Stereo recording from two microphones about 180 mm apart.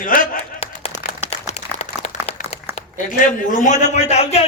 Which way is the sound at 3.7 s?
40° left (ahead or behind).